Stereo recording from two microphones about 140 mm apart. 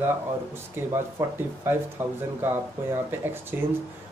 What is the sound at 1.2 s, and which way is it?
Speech, 20° right (ahead or behind).